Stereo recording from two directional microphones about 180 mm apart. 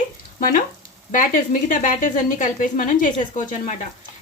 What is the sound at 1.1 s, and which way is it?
Speech, 45° left (ahead or behind).